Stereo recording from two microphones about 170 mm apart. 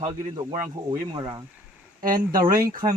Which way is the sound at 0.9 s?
25° right (ahead or behind).